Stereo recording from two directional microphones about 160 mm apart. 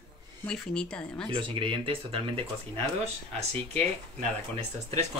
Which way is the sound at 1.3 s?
30° right (ahead or behind).